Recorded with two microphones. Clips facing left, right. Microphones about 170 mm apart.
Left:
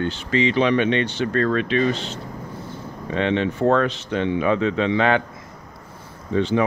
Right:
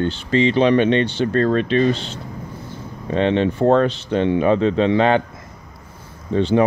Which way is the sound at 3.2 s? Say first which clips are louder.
Right 4 dB; 35° right (ahead or behind).